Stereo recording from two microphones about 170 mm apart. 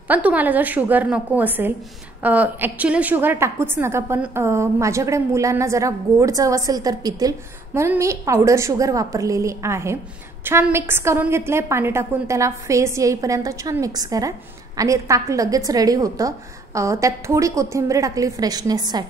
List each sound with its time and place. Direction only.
0.1 s a woman's voice: 10° right (ahead or behind)